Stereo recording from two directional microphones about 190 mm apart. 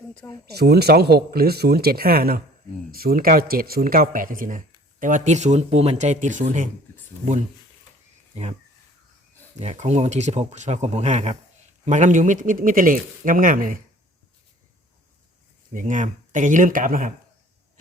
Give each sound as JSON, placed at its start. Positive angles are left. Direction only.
{"t": 0.1, "sound": "speech", "side_deg": 5}
{"t": 0.4, "sound": "speech", "side_deg": -55}
{"t": 9.6, "sound": "speech", "side_deg": -35}
{"t": 15.7, "sound": "speech", "side_deg": -40}